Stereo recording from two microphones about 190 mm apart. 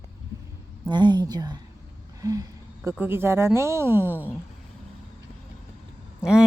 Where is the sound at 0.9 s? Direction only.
25° right (ahead or behind).